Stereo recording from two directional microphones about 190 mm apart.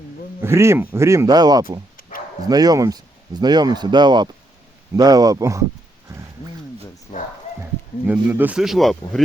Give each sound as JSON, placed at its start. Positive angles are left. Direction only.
{"t": 0.4, "sound": "speech", "side_deg": -15}
{"t": 2.0, "sound": "bow-wow", "side_deg": 50}
{"t": 2.5, "sound": "speech", "side_deg": -20}
{"t": 7.6, "sound": "speech", "side_deg": -10}